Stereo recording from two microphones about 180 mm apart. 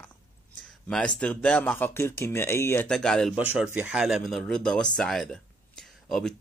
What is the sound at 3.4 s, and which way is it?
Speech, 10° right (ahead or behind).